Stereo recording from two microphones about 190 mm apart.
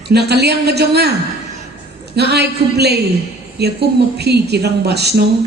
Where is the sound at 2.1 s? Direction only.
60° right (ahead or behind).